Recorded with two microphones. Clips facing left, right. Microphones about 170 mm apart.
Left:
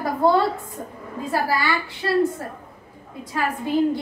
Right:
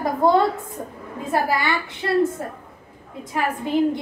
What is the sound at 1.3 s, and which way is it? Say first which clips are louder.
Speech: right 1 dB; 20° right (ahead or behind).